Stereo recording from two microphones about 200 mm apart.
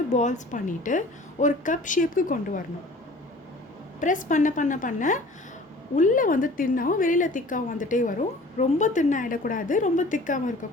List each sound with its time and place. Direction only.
0.1 s a woman's voice: 35° left (ahead or behind)
4.0 s a woman's voice: 40° left (ahead or behind)